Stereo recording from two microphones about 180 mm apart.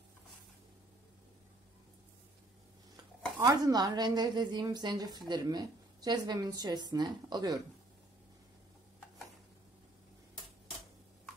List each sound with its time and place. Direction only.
3.3 s a woman's voice: 20° right (ahead or behind)